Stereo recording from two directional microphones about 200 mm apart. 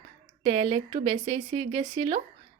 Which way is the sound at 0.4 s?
30° right (ahead or behind).